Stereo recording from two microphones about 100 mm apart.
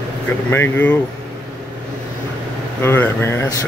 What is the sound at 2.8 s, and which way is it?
Speech, 25° left (ahead or behind).